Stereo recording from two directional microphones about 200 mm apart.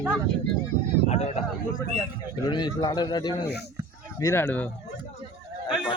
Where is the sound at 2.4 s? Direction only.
20° left (ahead or behind).